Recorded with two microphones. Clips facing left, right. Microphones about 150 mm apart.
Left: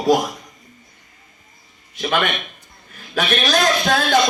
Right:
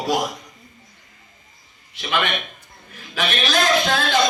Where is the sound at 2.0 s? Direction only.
45° left (ahead or behind).